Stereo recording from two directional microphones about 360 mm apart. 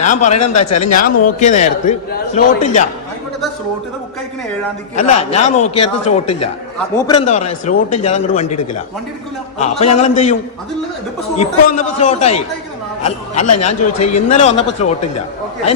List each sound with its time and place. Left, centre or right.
0.0 s a man's voice: centre
0.3 s speech: left
0.9 s a man's voice: left
5.3 s a man's voice: centre
9.6 s a man's voice: centre
11.3 s a man's voice: centre